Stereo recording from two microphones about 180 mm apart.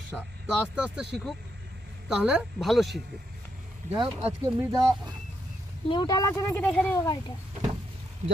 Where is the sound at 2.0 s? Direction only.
5° right (ahead or behind).